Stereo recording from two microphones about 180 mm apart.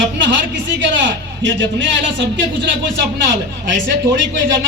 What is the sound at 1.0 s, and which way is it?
A man's voice, 85° right.